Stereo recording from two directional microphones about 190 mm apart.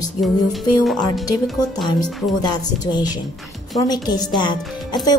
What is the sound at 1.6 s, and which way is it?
Speech, 20° left (ahead or behind).